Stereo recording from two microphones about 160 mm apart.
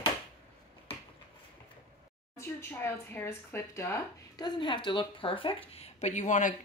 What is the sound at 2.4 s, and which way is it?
Speech, 15° left (ahead or behind).